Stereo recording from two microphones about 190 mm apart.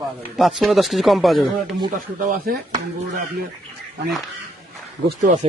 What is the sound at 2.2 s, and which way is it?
Speech, 50° right (ahead or behind).